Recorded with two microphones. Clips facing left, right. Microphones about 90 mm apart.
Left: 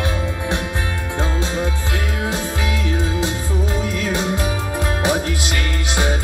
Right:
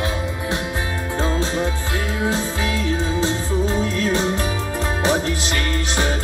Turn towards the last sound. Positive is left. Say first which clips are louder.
# even
turn(degrees=15)  # may be behind; listen again after turning